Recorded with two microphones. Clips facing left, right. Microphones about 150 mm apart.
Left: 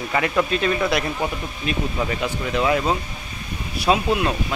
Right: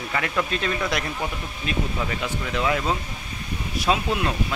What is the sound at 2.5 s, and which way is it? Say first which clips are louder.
Speech: left 4 dB; 20° left (ahead or behind).